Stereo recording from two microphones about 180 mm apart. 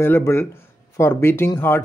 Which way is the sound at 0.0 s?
15° left (ahead or behind).